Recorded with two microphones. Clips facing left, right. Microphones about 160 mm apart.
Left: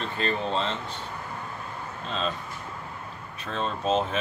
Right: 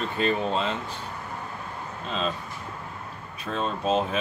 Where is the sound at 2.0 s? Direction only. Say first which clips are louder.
Right 1 dB; 5° right (ahead or behind).